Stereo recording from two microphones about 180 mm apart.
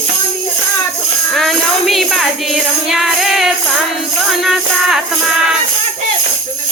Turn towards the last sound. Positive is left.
turn(degrees=0)  # may be behind; listen again after turning